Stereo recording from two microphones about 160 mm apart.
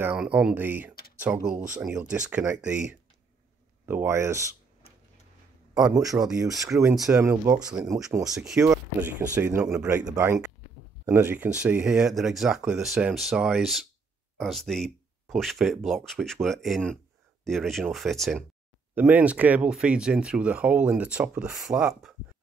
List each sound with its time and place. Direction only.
0.0 s speech: 10° right (ahead or behind)
3.8 s speech: 15° right (ahead or behind)
5.9 s speech: 20° right (ahead or behind)
8.3 s speech: centre (ahead or behind)
8.5 s speech: 20° right (ahead or behind); by 18.4 s centre (ahead or behind)
18.9 s speech: 10° right (ahead or behind)